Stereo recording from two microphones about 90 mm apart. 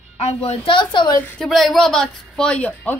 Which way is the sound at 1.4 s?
Centre (ahead or behind).